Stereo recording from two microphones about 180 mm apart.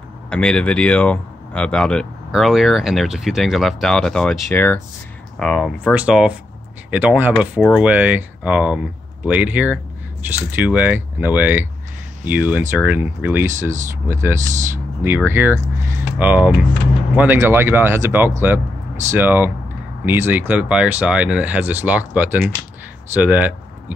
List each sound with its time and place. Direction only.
0.3 s speech: 5° left (ahead or behind)
5.4 s speech: centre (ahead or behind)
14.4 s speech: 45° right (ahead or behind)
15.0 s speech: 10° right (ahead or behind)